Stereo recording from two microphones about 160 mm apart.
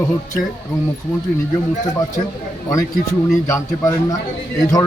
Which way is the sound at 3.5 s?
20° left (ahead or behind).